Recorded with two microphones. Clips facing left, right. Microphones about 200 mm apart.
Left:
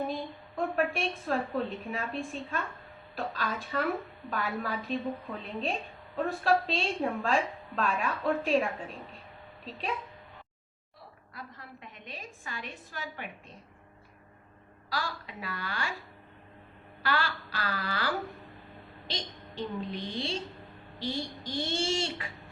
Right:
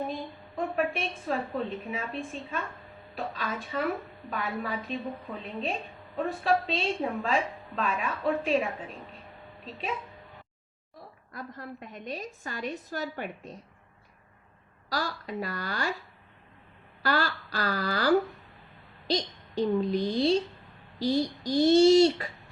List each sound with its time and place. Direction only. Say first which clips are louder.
0.5 s a woman's voice: even; centre (ahead or behind)
6.1 s a woman's voice: even; centre (ahead or behind)
11.3 s a woman's voice: right 7 dB; 45° right (ahead or behind)
14.8 s a woman's voice: right 4 dB; 40° right (ahead or behind)
17.0 s a woman's voice: right 3 dB; 40° right (ahead or behind)